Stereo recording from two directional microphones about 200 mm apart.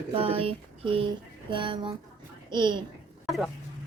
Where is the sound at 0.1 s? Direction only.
30° right (ahead or behind).